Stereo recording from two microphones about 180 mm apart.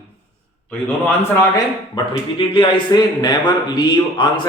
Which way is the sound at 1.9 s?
30° left (ahead or behind).